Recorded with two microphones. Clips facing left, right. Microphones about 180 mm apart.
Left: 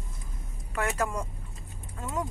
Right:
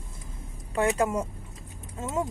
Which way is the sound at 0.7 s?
25° right (ahead or behind).